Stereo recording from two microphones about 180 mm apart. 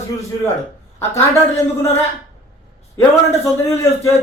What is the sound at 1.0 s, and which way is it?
Speech, 15° left (ahead or behind).